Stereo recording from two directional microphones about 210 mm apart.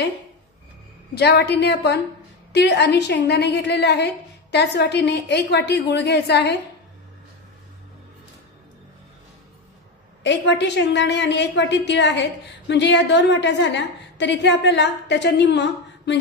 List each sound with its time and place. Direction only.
1.1 s a woman's voice: 50° left (ahead or behind)
10.2 s a woman's voice: 55° left (ahead or behind)